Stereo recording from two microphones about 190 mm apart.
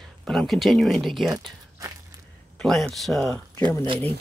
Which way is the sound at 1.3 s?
20° right (ahead or behind).